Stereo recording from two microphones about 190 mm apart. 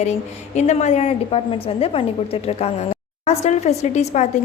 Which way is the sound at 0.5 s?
35° left (ahead or behind).